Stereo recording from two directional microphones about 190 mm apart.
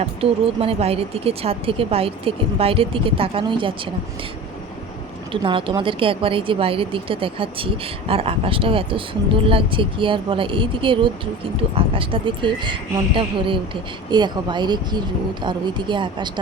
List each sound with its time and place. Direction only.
0.0 s speech: 30° right (ahead or behind)
5.3 s a woman's voice: 25° right (ahead or behind)